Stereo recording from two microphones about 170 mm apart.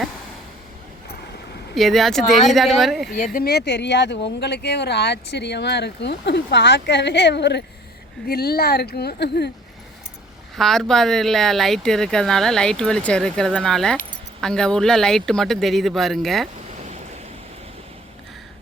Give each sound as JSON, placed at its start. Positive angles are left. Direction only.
{"t": 1.7, "sound": "speech", "side_deg": 0}
{"t": 3.3, "sound": "speech", "side_deg": 70}
{"t": 8.3, "sound": "speech", "side_deg": 65}
{"t": 10.5, "sound": "speech", "side_deg": 0}